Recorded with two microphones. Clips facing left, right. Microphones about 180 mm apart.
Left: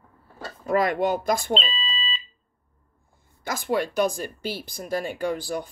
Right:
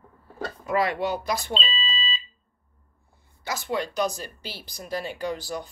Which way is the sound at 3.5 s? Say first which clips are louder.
Left 3 dB; 50° left (ahead or behind).